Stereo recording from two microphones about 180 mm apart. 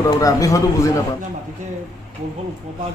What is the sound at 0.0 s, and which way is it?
Speech, 20° left (ahead or behind).